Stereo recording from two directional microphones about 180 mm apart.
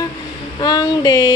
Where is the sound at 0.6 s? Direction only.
20° left (ahead or behind).